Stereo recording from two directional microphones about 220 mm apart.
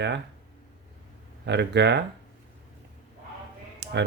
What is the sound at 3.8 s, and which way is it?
Music, 50° right (ahead or behind).